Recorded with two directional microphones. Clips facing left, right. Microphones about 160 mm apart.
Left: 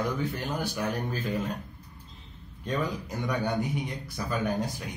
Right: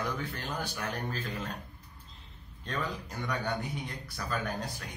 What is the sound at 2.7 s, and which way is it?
Speech, 15° left (ahead or behind).